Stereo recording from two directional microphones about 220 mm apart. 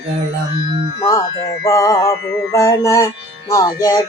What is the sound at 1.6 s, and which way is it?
Music, 15° left (ahead or behind).